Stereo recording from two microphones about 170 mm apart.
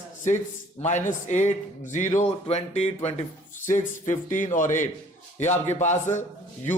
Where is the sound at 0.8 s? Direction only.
45° left (ahead or behind).